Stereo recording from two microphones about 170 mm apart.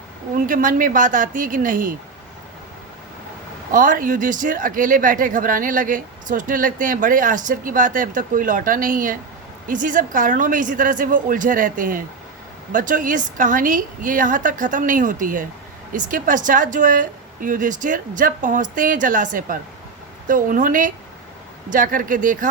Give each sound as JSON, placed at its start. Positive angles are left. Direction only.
{"t": 0.3, "sound": "speech", "side_deg": -55}
{"t": 3.7, "sound": "speech", "side_deg": -50}